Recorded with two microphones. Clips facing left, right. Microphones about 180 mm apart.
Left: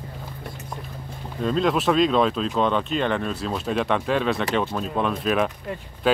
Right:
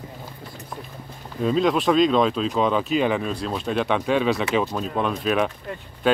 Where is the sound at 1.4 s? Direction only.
5° right (ahead or behind).